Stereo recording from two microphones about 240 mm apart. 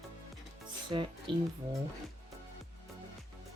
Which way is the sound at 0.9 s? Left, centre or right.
Centre.